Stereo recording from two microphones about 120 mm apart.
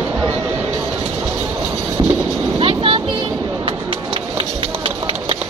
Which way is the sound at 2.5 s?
50° right (ahead or behind).